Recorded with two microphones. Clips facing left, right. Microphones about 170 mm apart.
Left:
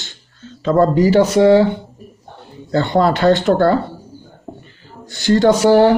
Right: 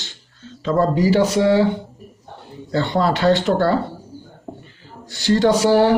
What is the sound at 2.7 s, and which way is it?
A man's voice, 50° left (ahead or behind).